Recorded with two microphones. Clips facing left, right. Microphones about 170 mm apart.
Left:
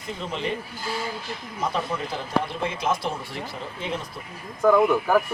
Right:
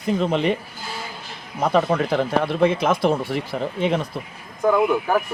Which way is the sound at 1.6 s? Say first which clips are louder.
Right 9 dB; 75° right (ahead or behind).